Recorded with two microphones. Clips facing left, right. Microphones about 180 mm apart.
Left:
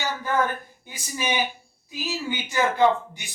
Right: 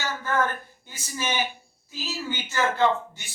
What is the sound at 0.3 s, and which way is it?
Speech, 15° left (ahead or behind).